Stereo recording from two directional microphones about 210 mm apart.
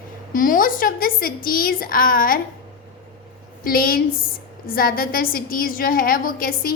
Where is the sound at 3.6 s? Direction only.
45° left (ahead or behind).